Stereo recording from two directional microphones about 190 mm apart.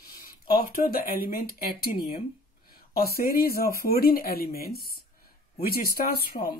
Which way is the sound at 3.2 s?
55° left (ahead or behind).